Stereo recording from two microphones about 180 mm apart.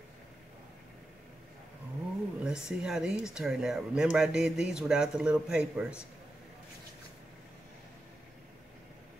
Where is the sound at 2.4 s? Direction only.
5° right (ahead or behind).